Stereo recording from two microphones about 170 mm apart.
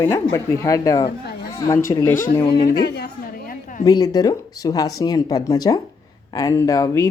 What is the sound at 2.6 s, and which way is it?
Speech, 65° left (ahead or behind).